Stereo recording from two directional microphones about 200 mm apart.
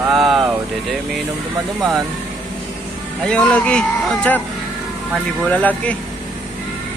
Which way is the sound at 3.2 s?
5° left (ahead or behind).